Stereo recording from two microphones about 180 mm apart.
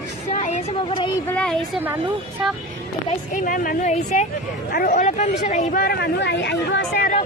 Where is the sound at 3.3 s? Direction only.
50° left (ahead or behind); by 7.0 s 75° left (ahead or behind).